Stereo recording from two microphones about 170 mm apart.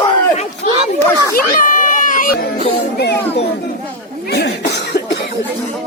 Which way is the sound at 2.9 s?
75° left (ahead or behind).